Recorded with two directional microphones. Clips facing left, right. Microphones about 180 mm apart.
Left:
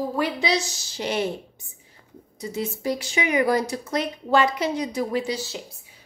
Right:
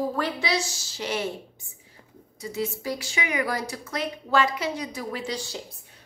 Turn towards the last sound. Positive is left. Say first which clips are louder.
# left 7 dB
turn(degrees=20)  # may be behind; listen again after turning